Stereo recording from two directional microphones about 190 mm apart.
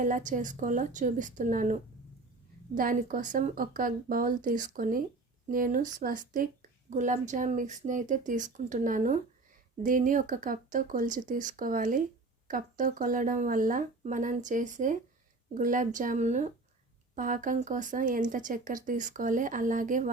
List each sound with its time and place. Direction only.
0.0 s speech: 40° right (ahead or behind)